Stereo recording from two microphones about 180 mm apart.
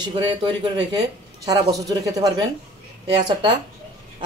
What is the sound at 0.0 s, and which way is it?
Speech, 30° right (ahead or behind).